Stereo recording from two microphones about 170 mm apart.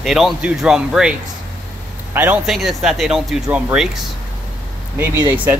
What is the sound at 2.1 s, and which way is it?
Speech, 10° right (ahead or behind).